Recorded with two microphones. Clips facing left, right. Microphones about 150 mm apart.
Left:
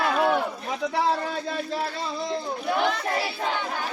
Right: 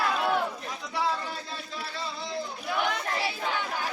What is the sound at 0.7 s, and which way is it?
Speech, 65° left (ahead or behind).